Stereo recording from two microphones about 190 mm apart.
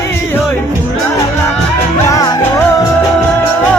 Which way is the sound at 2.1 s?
15° left (ahead or behind).